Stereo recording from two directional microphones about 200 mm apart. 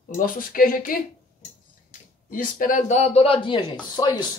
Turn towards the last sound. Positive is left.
turn(degrees=20)  # may be behind; listen again after turning